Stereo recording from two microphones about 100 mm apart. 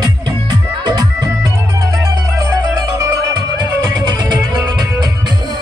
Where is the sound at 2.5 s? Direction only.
40° right (ahead or behind).